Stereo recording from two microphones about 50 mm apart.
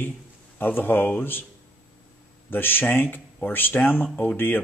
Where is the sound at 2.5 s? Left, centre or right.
Left.